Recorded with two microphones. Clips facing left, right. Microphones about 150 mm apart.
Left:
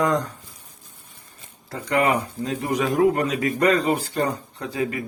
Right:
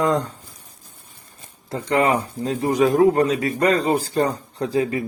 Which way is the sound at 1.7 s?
30° right (ahead or behind).